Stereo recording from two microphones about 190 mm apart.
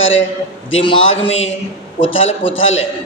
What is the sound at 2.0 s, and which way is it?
Speech, 90° left.